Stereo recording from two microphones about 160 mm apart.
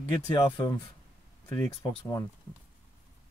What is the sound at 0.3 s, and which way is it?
Speech, 25° left (ahead or behind).